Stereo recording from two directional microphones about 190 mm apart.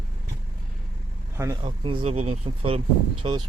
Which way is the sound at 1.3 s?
15° right (ahead or behind).